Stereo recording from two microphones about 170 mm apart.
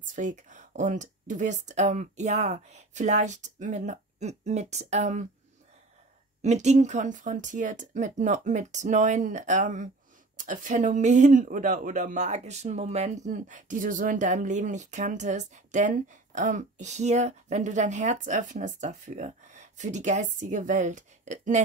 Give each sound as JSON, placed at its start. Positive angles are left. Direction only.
{"t": 0.0, "sound": "speech", "side_deg": -50}
{"t": 6.4, "sound": "speech", "side_deg": -45}